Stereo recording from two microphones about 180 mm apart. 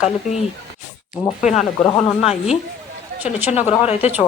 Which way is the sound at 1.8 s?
30° left (ahead or behind).